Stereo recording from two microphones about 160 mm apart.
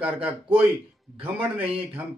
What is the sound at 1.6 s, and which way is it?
Speech, 35° right (ahead or behind).